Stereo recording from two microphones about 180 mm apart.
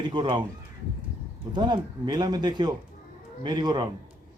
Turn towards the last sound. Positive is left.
turn(degrees=-25)  # may be behind; listen again after turning